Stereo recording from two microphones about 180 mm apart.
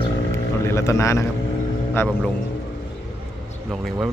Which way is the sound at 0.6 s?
15° left (ahead or behind).